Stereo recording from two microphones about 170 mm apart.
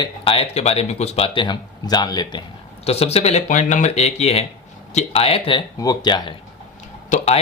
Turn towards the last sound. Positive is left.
turn(degrees=45)  # may be behind; listen again after turning